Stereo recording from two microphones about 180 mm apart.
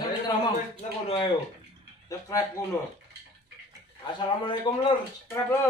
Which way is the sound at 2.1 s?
20° left (ahead or behind).